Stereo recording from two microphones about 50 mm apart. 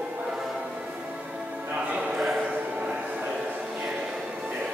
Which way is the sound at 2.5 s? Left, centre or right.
Right.